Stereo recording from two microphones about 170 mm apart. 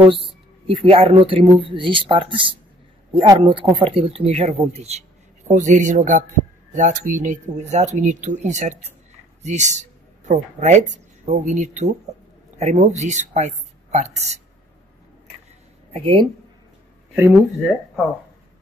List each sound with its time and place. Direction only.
0.7 s speech: 35° right (ahead or behind)
15.9 s speech: 30° right (ahead or behind)
17.6 s speech: centre (ahead or behind)